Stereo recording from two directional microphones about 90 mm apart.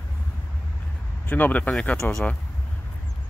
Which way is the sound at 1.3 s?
15° left (ahead or behind).